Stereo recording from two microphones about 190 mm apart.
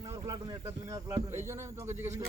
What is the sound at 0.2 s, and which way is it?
Speech, 20° right (ahead or behind).